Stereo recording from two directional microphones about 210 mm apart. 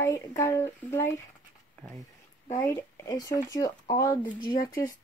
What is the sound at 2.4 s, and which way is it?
Speech, 15° left (ahead or behind).